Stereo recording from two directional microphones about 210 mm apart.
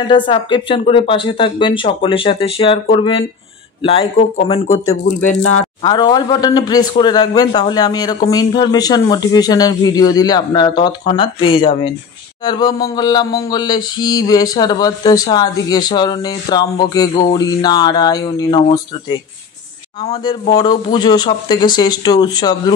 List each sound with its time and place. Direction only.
0.0 s mantra: 25° left (ahead or behind)
5.2 s speech: 35° left (ahead or behind)
5.8 s mantra: 20° left (ahead or behind)
20.0 s mantra: 20° left (ahead or behind)